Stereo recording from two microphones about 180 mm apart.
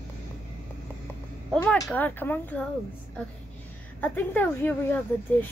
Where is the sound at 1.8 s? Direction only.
10° left (ahead or behind).